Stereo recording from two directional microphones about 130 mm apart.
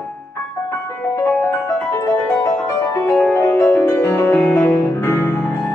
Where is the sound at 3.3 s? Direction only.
15° left (ahead or behind).